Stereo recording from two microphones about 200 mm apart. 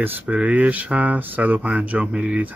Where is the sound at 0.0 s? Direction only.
10° right (ahead or behind).